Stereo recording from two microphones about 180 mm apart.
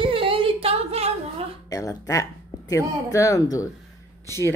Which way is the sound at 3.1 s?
20° left (ahead or behind).